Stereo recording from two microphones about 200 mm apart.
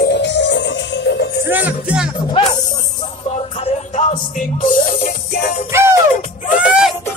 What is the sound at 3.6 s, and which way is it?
Music, 35° left (ahead or behind).